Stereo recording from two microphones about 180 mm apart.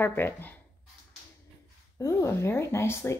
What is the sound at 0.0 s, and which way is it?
Speech, 10° left (ahead or behind).